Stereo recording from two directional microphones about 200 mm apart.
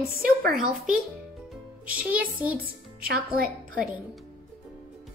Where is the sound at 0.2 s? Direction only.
45° right (ahead or behind).